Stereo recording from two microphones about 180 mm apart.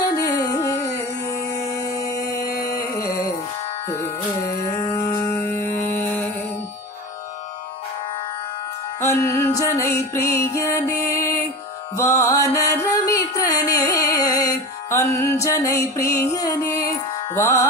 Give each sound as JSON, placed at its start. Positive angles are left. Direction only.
{"t": 0.1, "sound": "music", "side_deg": 20}
{"t": 1.6, "sound": "a sound", "side_deg": 20}
{"t": 2.9, "sound": "music", "side_deg": 15}
{"t": 9.0, "sound": "music", "side_deg": 15}